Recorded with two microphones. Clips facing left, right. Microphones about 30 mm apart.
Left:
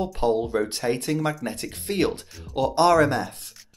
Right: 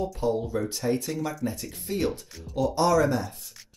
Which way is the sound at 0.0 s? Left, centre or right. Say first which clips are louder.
Left 4 dB; left.